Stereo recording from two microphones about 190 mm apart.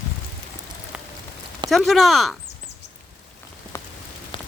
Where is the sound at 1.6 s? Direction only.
Centre (ahead or behind).